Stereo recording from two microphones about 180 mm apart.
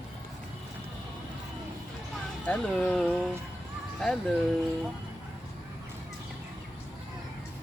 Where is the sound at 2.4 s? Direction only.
5° left (ahead or behind).